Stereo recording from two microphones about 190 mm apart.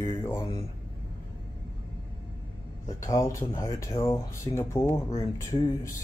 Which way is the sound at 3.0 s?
15° left (ahead or behind).